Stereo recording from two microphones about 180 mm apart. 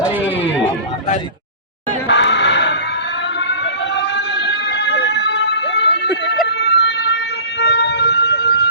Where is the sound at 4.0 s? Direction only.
70° left (ahead or behind).